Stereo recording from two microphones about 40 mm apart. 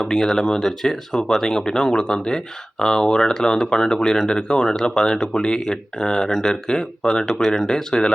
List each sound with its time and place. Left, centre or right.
0.0 s speech: centre